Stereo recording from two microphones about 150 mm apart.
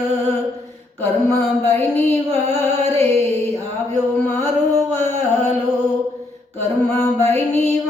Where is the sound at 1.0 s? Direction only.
15° left (ahead or behind).